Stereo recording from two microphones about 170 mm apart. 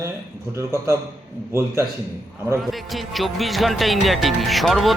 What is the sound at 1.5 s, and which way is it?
Speech, 15° right (ahead or behind).